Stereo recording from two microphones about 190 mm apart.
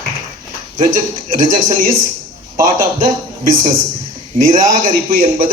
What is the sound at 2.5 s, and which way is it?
Speech, 45° right (ahead or behind).